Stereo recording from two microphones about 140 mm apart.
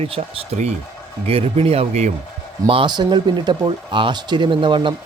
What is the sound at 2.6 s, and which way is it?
Speech, 35° right (ahead or behind).